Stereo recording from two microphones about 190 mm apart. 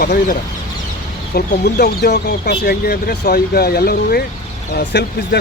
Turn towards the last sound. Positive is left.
turn(degrees=65)  # may be behind; listen again after turning